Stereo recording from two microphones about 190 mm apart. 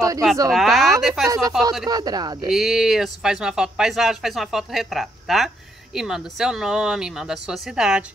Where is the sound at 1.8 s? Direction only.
20° right (ahead or behind).